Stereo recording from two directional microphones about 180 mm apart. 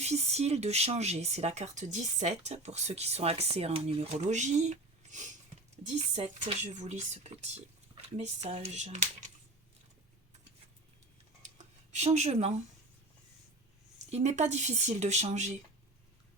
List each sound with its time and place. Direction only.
0.0 s speech: 35° right (ahead or behind)
11.5 s a sound: 40° right (ahead or behind)
14.1 s speech: 40° right (ahead or behind)